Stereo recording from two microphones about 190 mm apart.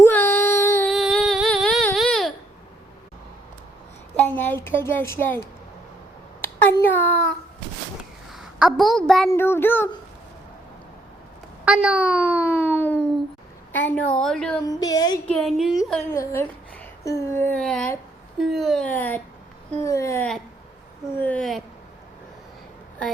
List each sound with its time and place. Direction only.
0.0 s child singing: 10° left (ahead or behind)
0.9 s a sound: centre (ahead or behind)
4.3 s a sound: 10° left (ahead or behind)
6.4 s a child's voice: 10° left (ahead or behind)
8.3 s a woman's voice: centre (ahead or behind)
11.6 s a child's voice: 5° right (ahead or behind)
12.1 s a sound: 10° left (ahead or behind)
13.7 s a woman's voice: 10° left (ahead or behind)
14.7 s a woman's voice: 20° left (ahead or behind)
15.3 s a woman's voice: centre (ahead or behind)
16.0 s a woman's voice: 15° left (ahead or behind)